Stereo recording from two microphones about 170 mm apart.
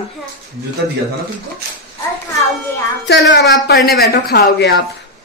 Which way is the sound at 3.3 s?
75° left (ahead or behind).